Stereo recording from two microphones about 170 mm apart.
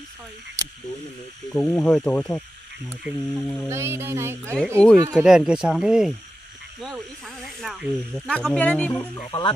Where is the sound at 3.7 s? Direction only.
15° right (ahead or behind).